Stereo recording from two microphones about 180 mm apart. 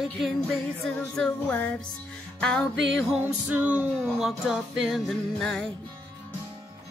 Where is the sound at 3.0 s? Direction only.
5° right (ahead or behind).